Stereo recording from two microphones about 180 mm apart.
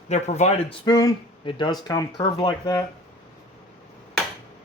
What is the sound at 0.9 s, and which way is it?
Speech, 20° left (ahead or behind).